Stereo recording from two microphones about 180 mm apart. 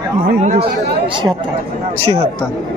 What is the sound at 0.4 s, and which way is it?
Speech, 40° right (ahead or behind).